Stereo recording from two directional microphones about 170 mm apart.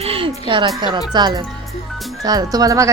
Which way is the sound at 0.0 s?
35° right (ahead or behind).